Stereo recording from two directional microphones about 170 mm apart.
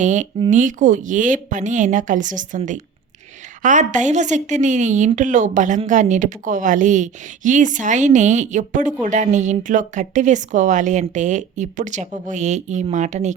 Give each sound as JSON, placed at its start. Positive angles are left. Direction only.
{"t": 0.0, "sound": "a woman's voice", "side_deg": -45}